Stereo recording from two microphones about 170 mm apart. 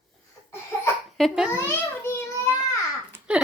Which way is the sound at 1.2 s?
Centre (ahead or behind).